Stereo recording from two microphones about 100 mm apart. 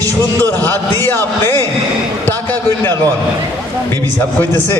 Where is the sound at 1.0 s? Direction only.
20° left (ahead or behind).